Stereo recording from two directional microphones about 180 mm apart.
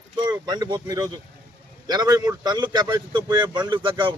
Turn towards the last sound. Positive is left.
turn(degrees=-25)  # may be behind; listen again after turning